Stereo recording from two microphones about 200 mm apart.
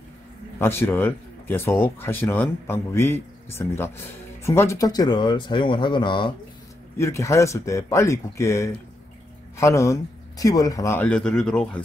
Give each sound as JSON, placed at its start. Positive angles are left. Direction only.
{"t": 0.6, "sound": "speech", "side_deg": 10}